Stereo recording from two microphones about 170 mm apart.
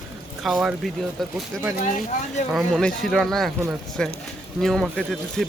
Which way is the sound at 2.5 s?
5° left (ahead or behind).